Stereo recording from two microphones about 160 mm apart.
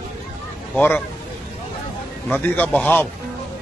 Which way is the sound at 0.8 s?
15° left (ahead or behind).